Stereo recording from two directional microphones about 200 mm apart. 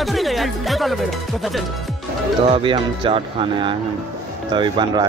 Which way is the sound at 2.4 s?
25° right (ahead or behind).